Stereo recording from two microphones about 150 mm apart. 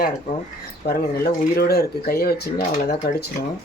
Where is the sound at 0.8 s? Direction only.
90° left.